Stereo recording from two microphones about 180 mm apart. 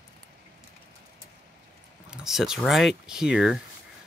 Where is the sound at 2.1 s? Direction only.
5° right (ahead or behind).